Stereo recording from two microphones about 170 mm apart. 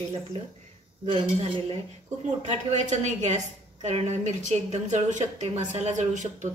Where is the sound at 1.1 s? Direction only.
35° right (ahead or behind).